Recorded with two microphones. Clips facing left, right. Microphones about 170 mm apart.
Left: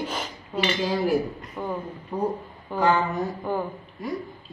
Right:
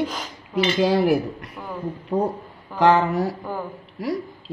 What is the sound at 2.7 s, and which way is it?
Speech, 85° right.